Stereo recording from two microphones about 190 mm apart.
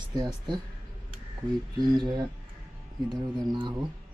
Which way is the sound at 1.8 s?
25° right (ahead or behind).